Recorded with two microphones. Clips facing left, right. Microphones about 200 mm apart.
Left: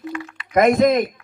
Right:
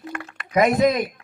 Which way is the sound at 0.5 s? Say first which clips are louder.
Left 3 dB; 50° left (ahead or behind).